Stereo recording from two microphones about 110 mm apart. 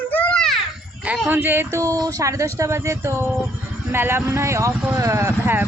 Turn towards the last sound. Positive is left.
turn(degrees=-20)  # may be behind; listen again after turning